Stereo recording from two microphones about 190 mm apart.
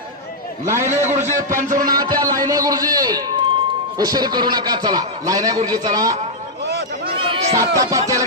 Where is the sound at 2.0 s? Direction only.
20° right (ahead or behind).